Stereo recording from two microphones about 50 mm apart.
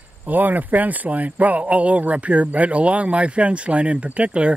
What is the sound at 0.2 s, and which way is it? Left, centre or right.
Speech, right.